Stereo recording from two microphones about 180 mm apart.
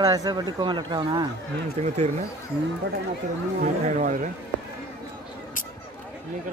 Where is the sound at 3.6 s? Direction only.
40° right (ahead or behind).